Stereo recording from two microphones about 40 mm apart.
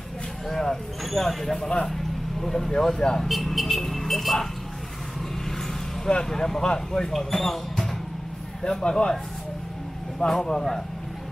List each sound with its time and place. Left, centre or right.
0.5 s speech: centre
6.0 s speech: centre
8.6 s speech: left
10.1 s speech: centre